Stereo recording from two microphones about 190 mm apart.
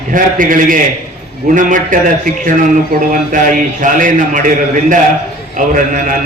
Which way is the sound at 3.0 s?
45° right (ahead or behind).